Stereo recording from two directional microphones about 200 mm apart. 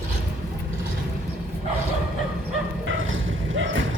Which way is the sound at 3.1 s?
75° right (ahead or behind).